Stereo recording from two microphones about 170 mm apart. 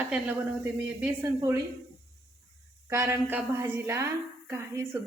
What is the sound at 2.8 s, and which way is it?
A woman's voice, 15° right (ahead or behind).